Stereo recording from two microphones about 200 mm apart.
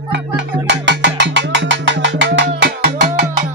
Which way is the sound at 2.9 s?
40° right (ahead or behind).